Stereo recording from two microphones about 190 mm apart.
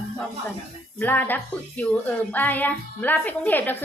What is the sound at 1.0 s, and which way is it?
A woman's voice, 10° left (ahead or behind).